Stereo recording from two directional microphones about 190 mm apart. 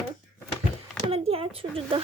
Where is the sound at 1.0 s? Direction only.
30° right (ahead or behind).